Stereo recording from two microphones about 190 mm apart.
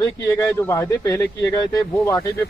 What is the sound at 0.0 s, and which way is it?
Speech, 15° left (ahead or behind).